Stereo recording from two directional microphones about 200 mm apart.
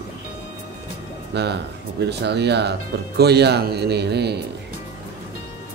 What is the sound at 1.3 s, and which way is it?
A man's voice, 55° right (ahead or behind).